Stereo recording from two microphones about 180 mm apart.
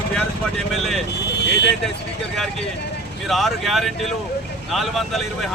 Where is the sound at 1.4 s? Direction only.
70° left (ahead or behind).